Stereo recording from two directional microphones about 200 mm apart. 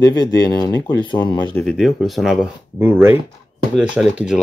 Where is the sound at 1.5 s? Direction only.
Centre (ahead or behind).